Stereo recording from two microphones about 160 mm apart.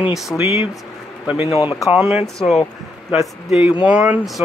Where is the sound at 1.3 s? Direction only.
35° left (ahead or behind).